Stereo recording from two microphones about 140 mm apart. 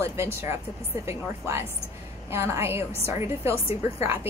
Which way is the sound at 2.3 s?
20° right (ahead or behind).